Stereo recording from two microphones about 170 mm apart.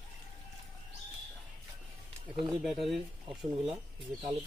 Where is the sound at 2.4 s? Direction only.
Centre (ahead or behind).